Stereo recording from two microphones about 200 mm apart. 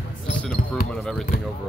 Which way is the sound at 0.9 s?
Centre (ahead or behind).